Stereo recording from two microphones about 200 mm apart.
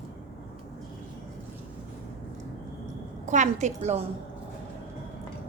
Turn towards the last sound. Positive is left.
turn(degrees=-35)  # may be behind; listen again after turning